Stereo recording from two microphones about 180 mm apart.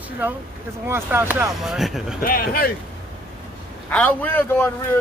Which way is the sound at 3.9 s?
10° left (ahead or behind).